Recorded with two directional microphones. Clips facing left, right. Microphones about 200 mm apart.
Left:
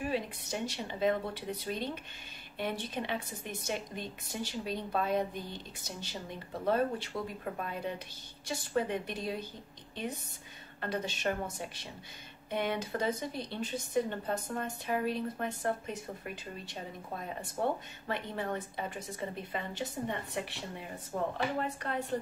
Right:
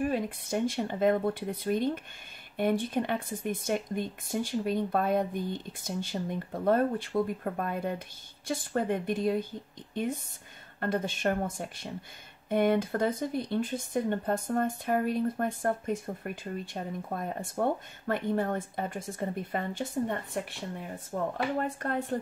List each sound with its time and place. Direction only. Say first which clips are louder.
0.0 s speech: right 5 dB; 50° right (ahead or behind)
10.8 s speech: right 5 dB; 50° right (ahead or behind)
21.5 s speech: right 4 dB; 45° right (ahead or behind)